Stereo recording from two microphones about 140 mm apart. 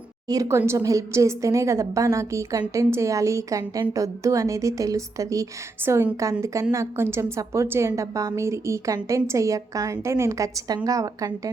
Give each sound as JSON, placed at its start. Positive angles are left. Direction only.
{"t": 0.3, "sound": "a woman's voice", "side_deg": -20}